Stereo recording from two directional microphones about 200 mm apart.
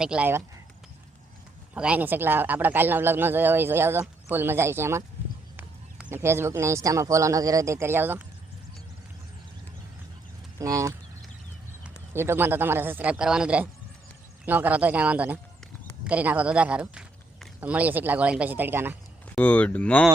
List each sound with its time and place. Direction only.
0.0 s speech: 5° right (ahead or behind)
1.7 s speech: 5° right (ahead or behind)
10.6 s speech: 15° right (ahead or behind)
19.4 s speech: 10° left (ahead or behind)